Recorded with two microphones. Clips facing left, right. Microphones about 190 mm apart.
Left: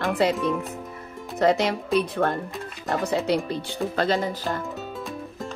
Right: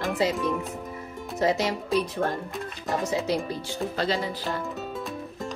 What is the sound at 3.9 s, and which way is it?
Speech, 50° left (ahead or behind).